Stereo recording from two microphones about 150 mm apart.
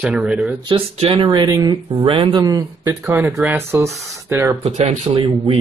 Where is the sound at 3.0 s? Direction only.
10° right (ahead or behind).